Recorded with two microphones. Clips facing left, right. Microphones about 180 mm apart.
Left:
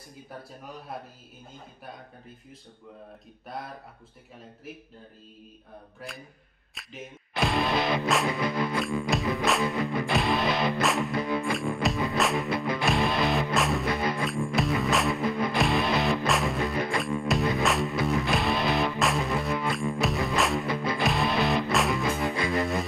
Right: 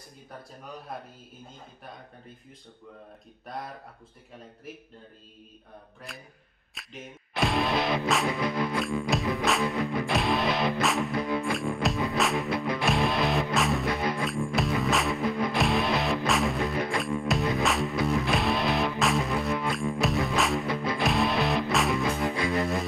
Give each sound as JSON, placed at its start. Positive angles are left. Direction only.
{"t": 5.9, "sound": "speech", "side_deg": 0}
{"t": 6.7, "sound": "music", "side_deg": 0}